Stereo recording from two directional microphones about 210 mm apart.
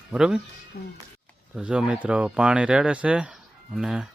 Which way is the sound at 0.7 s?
50° left (ahead or behind).